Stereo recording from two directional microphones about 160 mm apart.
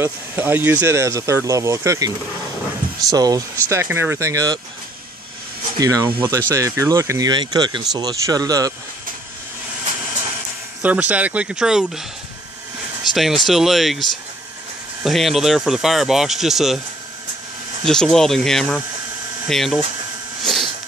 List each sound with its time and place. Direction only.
0.0 s speech: 15° right (ahead or behind)
5.8 s speech: 20° right (ahead or behind)
10.8 s speech: 10° right (ahead or behind)
13.1 s speech: centre (ahead or behind)
15.0 s speech: centre (ahead or behind)
17.8 s speech: 5° left (ahead or behind)